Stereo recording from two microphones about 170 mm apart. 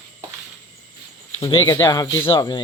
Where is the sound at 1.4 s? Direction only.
20° left (ahead or behind).